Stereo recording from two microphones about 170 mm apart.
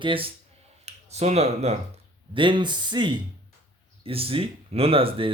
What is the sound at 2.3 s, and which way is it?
Speech, 30° right (ahead or behind).